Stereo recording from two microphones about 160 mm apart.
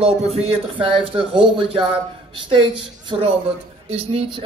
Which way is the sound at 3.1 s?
35° right (ahead or behind).